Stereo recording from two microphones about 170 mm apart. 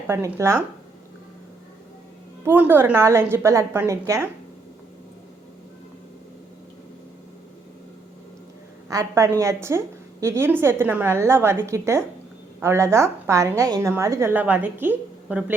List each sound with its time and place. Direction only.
0.3 s a woman's voice: 15° right (ahead or behind)
2.4 s a woman's voice: 10° right (ahead or behind)
8.9 s a woman's voice: 20° right (ahead or behind)